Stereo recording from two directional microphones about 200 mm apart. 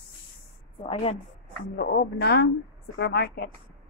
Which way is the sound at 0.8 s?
30° left (ahead or behind).